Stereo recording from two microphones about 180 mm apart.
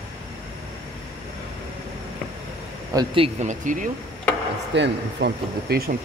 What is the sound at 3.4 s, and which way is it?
Speech, 45° right (ahead or behind).